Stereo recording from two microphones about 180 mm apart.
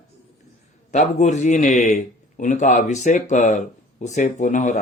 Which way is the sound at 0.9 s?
40° left (ahead or behind).